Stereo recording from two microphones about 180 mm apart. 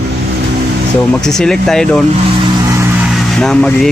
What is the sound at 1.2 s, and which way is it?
Speech, 5° left (ahead or behind).